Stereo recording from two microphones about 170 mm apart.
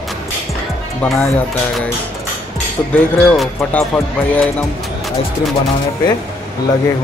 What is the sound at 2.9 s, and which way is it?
Speech, 10° left (ahead or behind).